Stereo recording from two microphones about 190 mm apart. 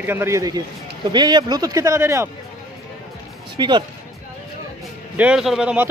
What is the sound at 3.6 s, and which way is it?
Speech, 25° right (ahead or behind).